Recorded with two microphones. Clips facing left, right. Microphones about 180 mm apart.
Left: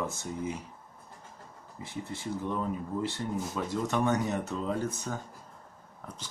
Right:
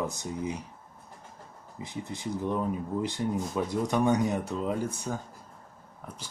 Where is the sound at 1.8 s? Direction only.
15° right (ahead or behind).